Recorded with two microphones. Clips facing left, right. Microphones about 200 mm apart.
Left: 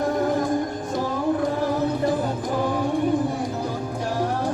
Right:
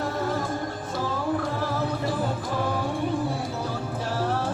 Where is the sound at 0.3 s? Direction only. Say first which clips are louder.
Left 6 dB; 15° left (ahead or behind).